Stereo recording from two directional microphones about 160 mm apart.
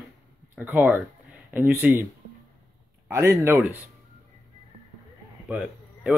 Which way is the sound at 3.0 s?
15° right (ahead or behind).